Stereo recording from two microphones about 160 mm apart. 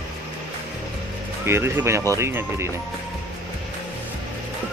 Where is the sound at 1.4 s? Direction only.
15° right (ahead or behind).